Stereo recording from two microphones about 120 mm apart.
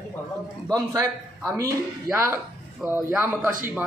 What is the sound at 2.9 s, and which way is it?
Speech, 15° right (ahead or behind).